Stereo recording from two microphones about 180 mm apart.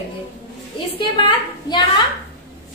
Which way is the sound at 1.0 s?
25° left (ahead or behind).